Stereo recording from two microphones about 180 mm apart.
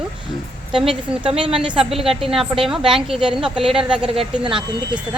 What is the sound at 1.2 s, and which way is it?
Speech, 30° right (ahead or behind).